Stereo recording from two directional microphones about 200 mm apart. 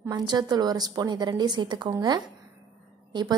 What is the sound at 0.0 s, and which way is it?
A woman's voice, 20° right (ahead or behind).